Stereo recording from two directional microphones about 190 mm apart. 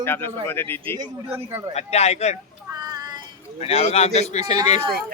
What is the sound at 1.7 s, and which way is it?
Speech, 35° left (ahead or behind).